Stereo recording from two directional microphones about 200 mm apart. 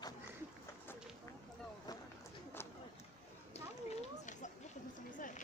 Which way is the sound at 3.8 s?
40° left (ahead or behind).